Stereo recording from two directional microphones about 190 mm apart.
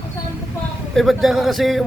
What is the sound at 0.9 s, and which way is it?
Speech, centre (ahead or behind).